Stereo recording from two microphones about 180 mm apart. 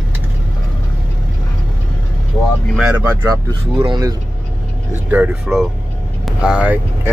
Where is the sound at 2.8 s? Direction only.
10° right (ahead or behind).